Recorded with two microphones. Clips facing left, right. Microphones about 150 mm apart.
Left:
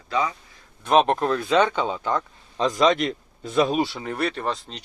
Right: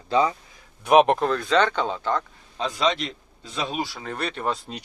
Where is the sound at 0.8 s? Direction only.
10° right (ahead or behind).